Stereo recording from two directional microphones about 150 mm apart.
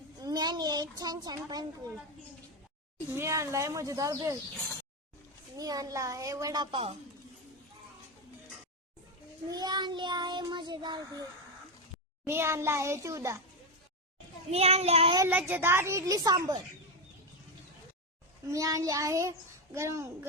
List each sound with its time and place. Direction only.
0.2 s speech: 25° right (ahead or behind)
3.2 s child singing: 20° right (ahead or behind)
5.5 s child singing: 25° right (ahead or behind)
9.5 s child singing: 25° right (ahead or behind)
12.2 s child singing: 15° right (ahead or behind)
14.5 s a child's voice: 45° right (ahead or behind)
15.3 s child singing: 10° right (ahead or behind); by 16.6 s 25° right (ahead or behind)
18.4 s child singing: 20° right (ahead or behind)